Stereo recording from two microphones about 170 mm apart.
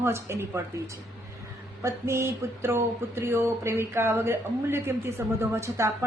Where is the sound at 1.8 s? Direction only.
15° right (ahead or behind).